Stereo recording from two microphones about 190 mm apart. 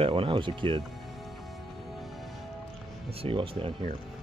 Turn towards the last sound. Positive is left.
turn(degrees=-25)  # may be behind; listen again after turning